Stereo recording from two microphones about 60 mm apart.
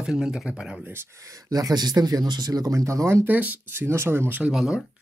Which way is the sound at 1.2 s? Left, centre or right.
Right.